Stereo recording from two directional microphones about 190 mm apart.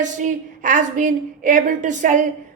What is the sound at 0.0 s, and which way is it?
A woman's voice, 40° right (ahead or behind).